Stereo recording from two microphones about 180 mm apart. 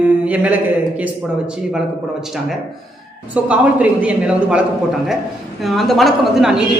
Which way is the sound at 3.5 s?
5° right (ahead or behind).